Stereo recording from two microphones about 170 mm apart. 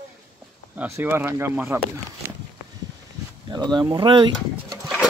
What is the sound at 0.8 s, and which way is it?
Speech, 10° right (ahead or behind).